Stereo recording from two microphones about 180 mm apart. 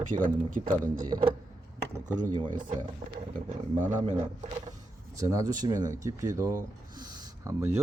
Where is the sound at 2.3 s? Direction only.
25° right (ahead or behind).